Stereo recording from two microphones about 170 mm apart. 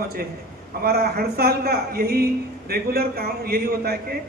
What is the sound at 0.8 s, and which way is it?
A man's voice, 65° right (ahead or behind).